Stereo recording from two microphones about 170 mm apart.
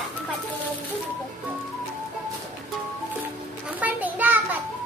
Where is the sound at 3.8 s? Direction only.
10° right (ahead or behind).